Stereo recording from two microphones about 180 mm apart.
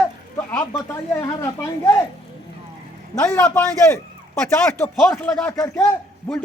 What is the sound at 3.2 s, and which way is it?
Speech, 15° left (ahead or behind).